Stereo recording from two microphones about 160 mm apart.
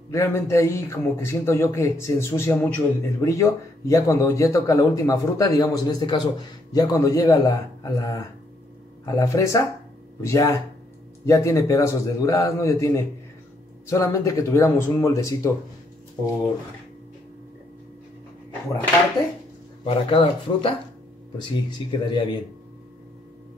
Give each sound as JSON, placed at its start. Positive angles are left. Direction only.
{"t": 0.1, "sound": "a man's voice", "side_deg": 15}
{"t": 19.8, "sound": "a man's voice", "side_deg": 35}